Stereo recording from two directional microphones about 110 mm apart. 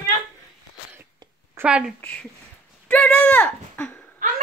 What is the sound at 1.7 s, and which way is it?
Speech, 10° right (ahead or behind).